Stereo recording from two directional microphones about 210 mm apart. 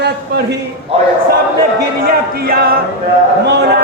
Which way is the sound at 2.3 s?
45° right (ahead or behind).